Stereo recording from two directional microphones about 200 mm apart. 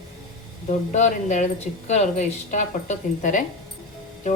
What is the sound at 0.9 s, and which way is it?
Speech, 35° left (ahead or behind).